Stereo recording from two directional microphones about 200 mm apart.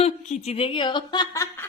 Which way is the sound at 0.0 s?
35° left (ahead or behind).